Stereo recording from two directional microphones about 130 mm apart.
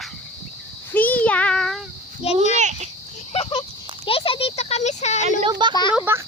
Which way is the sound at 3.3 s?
50° left (ahead or behind).